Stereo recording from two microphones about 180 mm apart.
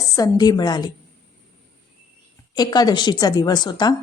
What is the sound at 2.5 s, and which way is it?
A woman's voice, 20° left (ahead or behind).